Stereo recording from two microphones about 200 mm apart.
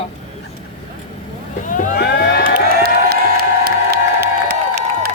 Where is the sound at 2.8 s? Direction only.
50° right (ahead or behind).